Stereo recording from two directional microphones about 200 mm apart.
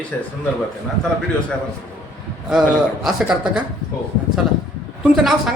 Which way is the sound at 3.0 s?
5° right (ahead or behind).